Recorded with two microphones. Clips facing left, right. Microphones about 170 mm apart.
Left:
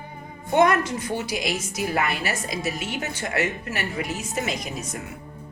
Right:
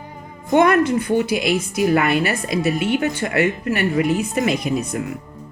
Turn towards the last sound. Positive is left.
turn(degrees=-60)  # may be behind; listen again after turning